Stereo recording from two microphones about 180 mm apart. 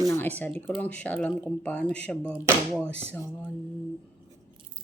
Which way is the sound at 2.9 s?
35° right (ahead or behind).